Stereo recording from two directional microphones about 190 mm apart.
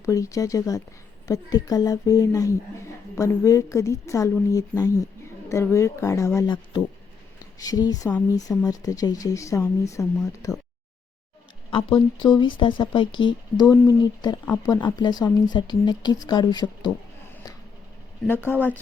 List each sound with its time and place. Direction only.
0.0 s speech: 15° left (ahead or behind)
11.7 s speech: 25° left (ahead or behind)
18.3 s speech: 10° left (ahead or behind)